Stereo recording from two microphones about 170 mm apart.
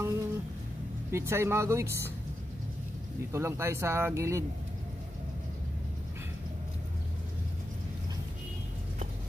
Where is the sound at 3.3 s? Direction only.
15° right (ahead or behind).